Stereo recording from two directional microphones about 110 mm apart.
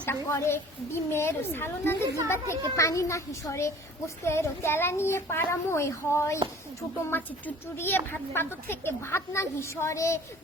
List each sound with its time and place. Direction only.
0.0 s a woman's voice: 20° left (ahead or behind)